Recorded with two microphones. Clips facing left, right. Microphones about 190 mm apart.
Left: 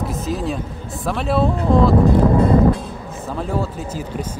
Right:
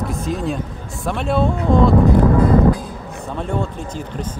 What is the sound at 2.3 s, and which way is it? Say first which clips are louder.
Music: even; 25° left (ahead or behind).